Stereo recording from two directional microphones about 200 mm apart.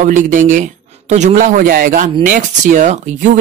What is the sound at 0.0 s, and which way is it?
Speech, 40° right (ahead or behind).